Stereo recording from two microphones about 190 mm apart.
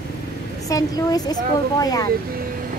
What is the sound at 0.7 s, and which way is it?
A woman's voice, 20° left (ahead or behind).